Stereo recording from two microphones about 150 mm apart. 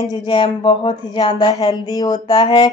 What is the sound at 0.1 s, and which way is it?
Speech, 30° left (ahead or behind).